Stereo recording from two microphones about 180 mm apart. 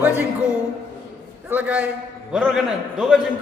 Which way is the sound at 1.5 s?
10° right (ahead or behind).